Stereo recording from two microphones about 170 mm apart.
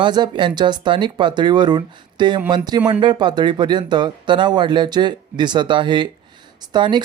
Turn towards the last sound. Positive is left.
turn(degrees=-25)  # may be behind; listen again after turning